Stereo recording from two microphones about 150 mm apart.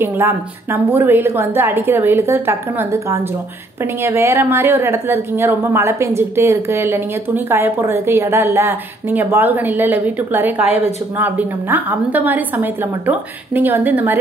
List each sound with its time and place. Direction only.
0.0 s a woman's voice: 15° right (ahead or behind)